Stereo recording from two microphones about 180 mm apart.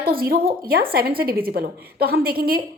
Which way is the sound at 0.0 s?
55° right (ahead or behind).